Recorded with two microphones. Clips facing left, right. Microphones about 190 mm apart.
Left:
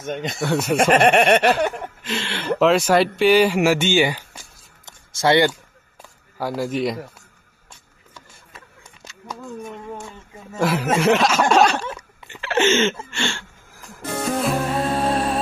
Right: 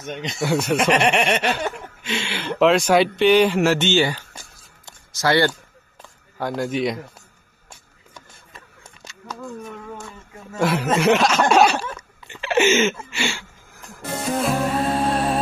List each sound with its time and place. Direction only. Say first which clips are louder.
0.0 s speech: left 3 dB; 50° left (ahead or behind)
0.4 s speech: right 1 dB; centre (ahead or behind)
0.7 s snicker: left 6 dB; 50° left (ahead or behind)
2.0 s speech: even; centre (ahead or behind)
4.8 s a sound: left 3 dB; 20° left (ahead or behind)
6.3 s speech: even; 5° left (ahead or behind)
10.6 s a sound: even; centre (ahead or behind)
13.1 s music: even; 10° right (ahead or behind)